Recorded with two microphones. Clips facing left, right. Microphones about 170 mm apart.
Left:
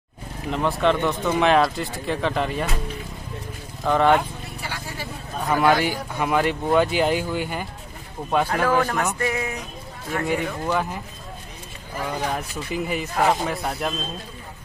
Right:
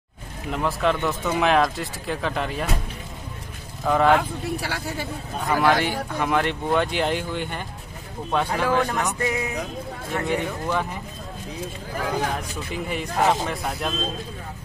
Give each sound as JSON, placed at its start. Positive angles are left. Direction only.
{"t": 0.5, "sound": "speech", "side_deg": 0}
{"t": 3.8, "sound": "speech", "side_deg": 0}
{"t": 4.6, "sound": "speech", "side_deg": -65}
{"t": 5.5, "sound": "speech", "side_deg": 0}
{"t": 9.2, "sound": "speech", "side_deg": -20}
{"t": 10.2, "sound": "speech", "side_deg": 5}
{"t": 12.4, "sound": "speech", "side_deg": 5}